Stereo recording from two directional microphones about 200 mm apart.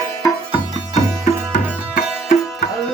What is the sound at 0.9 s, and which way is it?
Music, 35° left (ahead or behind).